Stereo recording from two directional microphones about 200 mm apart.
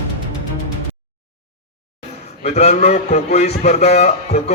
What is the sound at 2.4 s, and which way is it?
A man's voice, 35° left (ahead or behind).